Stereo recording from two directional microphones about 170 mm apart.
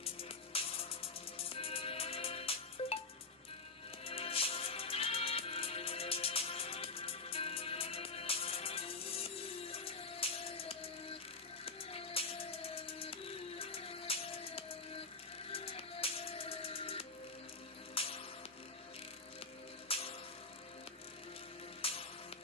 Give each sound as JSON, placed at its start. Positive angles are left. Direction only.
{"t": 0.0, "sound": "music", "side_deg": 35}
{"t": 4.0, "sound": "music", "side_deg": 35}
{"t": 19.9, "sound": "music", "side_deg": 35}
{"t": 21.8, "sound": "music", "side_deg": 35}